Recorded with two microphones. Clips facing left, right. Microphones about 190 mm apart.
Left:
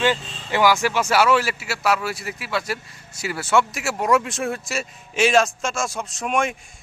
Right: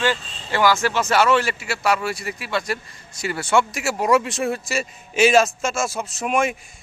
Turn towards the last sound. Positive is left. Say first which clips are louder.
# right 2 dB
turn(degrees=-5)  # may be behind; listen again after turning